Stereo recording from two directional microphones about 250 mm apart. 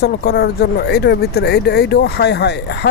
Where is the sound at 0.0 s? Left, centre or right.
Left.